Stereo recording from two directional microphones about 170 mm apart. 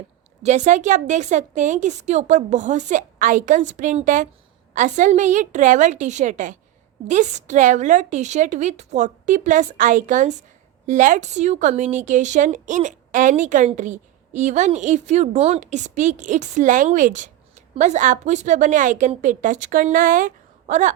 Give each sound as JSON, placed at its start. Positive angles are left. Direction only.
{"t": 0.4, "sound": "speech", "side_deg": -45}